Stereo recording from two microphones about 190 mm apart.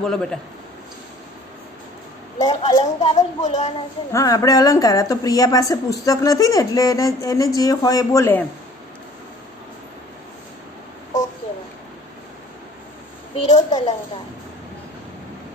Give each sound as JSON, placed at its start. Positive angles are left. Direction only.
{"t": 0.0, "sound": "a man's voice", "side_deg": 5}
{"t": 2.3, "sound": "a woman's voice", "side_deg": 35}
{"t": 4.1, "sound": "a woman's voice", "side_deg": 15}
{"t": 13.4, "sound": "a woman's voice", "side_deg": 35}